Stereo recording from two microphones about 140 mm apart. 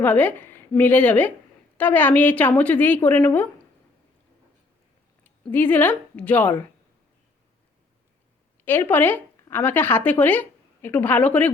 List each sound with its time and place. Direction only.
0.0 s a woman's voice: 10° left (ahead or behind)
5.2 s speech: 15° left (ahead or behind)
8.6 s speech: 15° left (ahead or behind)